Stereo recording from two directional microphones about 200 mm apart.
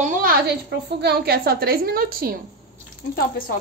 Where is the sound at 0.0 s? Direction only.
45° right (ahead or behind).